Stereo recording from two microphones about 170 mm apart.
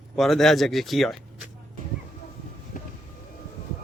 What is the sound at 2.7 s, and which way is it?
Vehicle, 50° left (ahead or behind).